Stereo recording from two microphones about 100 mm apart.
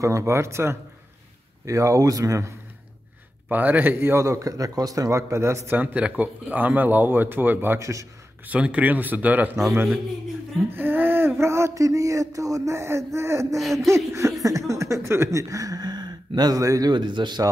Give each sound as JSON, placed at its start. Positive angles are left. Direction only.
{"t": 0.0, "sound": "speech", "side_deg": -30}
{"t": 3.4, "sound": "speech", "side_deg": -15}
{"t": 5.8, "sound": "speech", "side_deg": -15}
{"t": 8.5, "sound": "speech", "side_deg": -10}
{"t": 10.8, "sound": "speech", "side_deg": -20}
{"t": 13.6, "sound": "speech", "side_deg": 0}
{"t": 13.8, "sound": "speech", "side_deg": -30}
{"t": 16.9, "sound": "speech", "side_deg": -50}